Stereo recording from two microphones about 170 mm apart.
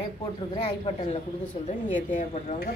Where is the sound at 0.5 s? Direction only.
35° left (ahead or behind).